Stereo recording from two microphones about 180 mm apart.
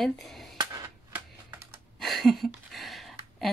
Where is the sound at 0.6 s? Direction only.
20° right (ahead or behind).